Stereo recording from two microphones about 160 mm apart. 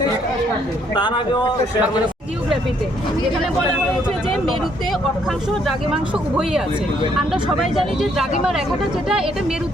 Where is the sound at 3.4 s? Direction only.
5° right (ahead or behind).